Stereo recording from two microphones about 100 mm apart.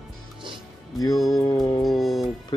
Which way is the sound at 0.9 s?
40° left (ahead or behind).